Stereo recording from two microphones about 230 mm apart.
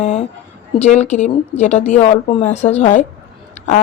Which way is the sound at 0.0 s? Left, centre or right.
Left.